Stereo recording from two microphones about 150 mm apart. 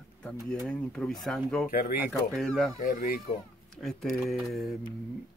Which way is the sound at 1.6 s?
75° left (ahead or behind).